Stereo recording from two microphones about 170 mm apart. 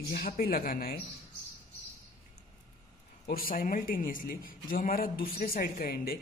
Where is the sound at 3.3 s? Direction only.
60° left (ahead or behind).